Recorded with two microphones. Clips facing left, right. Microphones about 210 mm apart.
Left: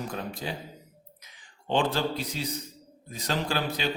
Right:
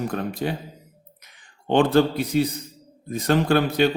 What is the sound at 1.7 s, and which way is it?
A man's voice, 55° right (ahead or behind).